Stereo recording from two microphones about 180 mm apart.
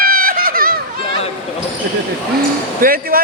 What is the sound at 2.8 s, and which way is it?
Speech, 50° right (ahead or behind).